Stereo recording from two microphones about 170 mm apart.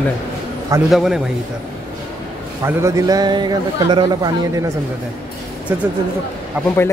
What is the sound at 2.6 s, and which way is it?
A man's voice, 15° right (ahead or behind).